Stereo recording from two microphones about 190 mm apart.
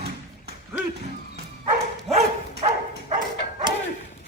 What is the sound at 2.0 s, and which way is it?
Dog, 35° right (ahead or behind).